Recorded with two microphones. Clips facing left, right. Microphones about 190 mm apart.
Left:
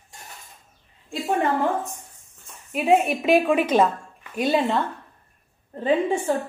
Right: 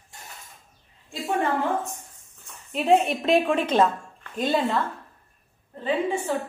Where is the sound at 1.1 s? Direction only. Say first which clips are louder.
Left 3 dB; centre (ahead or behind).